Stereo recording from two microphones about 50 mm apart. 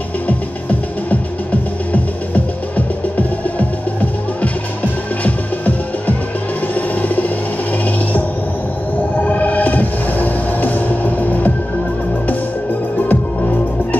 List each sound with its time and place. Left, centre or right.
1.9 s music: left
6.7 s music: left
13.1 s music: left